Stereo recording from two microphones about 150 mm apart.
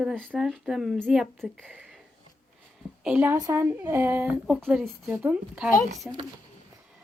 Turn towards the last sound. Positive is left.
turn(degrees=-10)  # may be behind; listen again after turning